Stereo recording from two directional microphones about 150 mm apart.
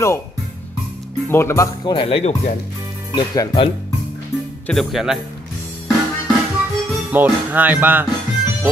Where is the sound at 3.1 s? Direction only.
30° left (ahead or behind).